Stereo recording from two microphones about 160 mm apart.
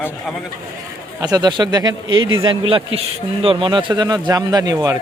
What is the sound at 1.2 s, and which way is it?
A man's voice, 25° right (ahead or behind).